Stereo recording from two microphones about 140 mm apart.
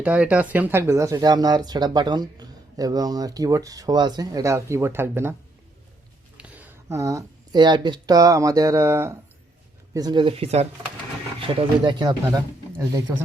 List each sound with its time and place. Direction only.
0.0 s speech: 10° right (ahead or behind)
6.3 s a sound: 10° right (ahead or behind)
6.9 s speech: 25° right (ahead or behind)
9.9 s speech: 30° right (ahead or behind); by 10.7 s 45° right (ahead or behind)
11.3 s speech: 35° right (ahead or behind)